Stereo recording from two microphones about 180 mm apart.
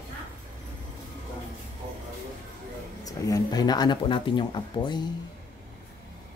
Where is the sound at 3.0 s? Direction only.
20° left (ahead or behind).